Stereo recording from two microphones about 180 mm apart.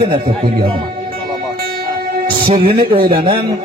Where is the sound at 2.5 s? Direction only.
30° right (ahead or behind).